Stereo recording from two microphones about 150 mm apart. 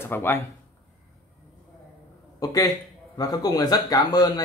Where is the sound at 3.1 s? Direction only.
25° left (ahead or behind).